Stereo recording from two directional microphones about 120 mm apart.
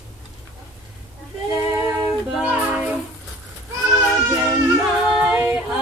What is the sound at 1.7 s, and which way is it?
Music, 20° right (ahead or behind).